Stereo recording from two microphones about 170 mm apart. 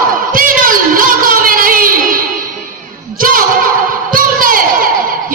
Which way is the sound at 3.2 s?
55° right (ahead or behind).